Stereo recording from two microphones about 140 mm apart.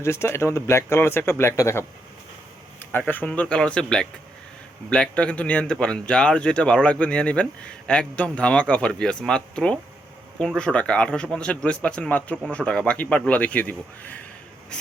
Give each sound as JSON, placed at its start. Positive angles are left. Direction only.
{"t": 0.0, "sound": "speech", "side_deg": 20}
{"t": 3.1, "sound": "speech", "side_deg": 10}